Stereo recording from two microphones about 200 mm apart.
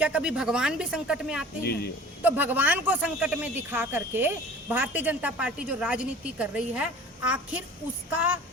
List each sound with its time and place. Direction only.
0.0 s speech: 5° right (ahead or behind)
1.6 s speech: 55° left (ahead or behind)
2.2 s speech: 10° right (ahead or behind)